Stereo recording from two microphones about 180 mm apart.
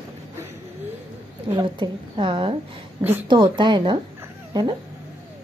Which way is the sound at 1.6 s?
25° right (ahead or behind).